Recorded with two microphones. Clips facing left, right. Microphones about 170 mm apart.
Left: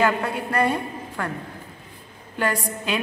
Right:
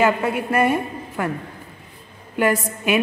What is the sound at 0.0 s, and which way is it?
A woman's voice, 20° right (ahead or behind).